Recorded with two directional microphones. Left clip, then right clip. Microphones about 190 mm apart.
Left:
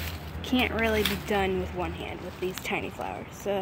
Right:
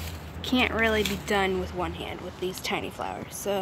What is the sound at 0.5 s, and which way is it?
Speech, 10° right (ahead or behind).